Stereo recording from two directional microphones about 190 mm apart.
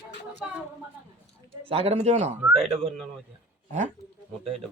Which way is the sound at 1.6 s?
30° right (ahead or behind).